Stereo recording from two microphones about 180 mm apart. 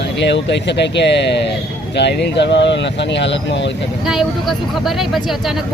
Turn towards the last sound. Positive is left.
turn(degrees=0)  # may be behind; listen again after turning